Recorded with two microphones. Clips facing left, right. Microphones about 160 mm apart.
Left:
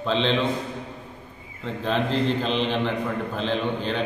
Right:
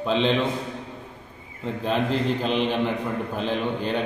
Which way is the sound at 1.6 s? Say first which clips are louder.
Right 1 dB; 10° right (ahead or behind).